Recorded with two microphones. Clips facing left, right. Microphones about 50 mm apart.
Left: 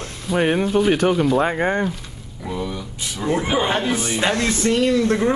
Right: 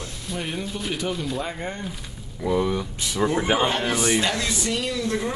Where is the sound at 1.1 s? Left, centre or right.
Left.